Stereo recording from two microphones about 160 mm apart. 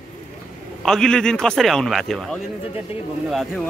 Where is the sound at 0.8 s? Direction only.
5° left (ahead or behind).